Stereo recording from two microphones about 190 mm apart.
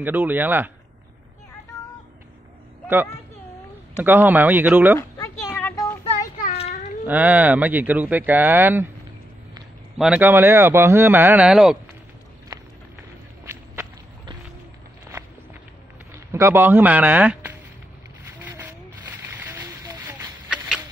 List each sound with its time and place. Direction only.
0.0 s speech: 10° right (ahead or behind)
1.7 s music: 15° left (ahead or behind)
4.0 s speech: 10° right (ahead or behind)
4.9 s speech: 15° left (ahead or behind)
5.5 s a sound: 10° left (ahead or behind)
6.5 s children playing: 35° left (ahead or behind)
7.1 s speech: 10° right (ahead or behind)
9.9 s speech: 5° right (ahead or behind)
12.5 s clip-clop: 20° right (ahead or behind)
16.3 s speech: 15° right (ahead or behind)
18.4 s a sound: 10° right (ahead or behind)